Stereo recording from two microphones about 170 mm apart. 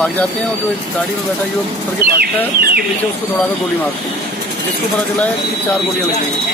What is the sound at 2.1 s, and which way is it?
Speech, 65° right (ahead or behind).